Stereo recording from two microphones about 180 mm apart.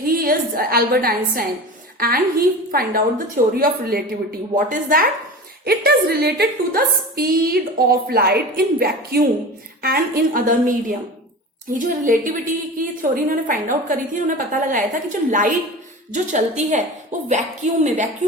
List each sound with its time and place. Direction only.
0.0 s a woman's voice: 55° right (ahead or behind)
5.6 s a woman's voice: 60° right (ahead or behind); by 18.1 s 40° right (ahead or behind)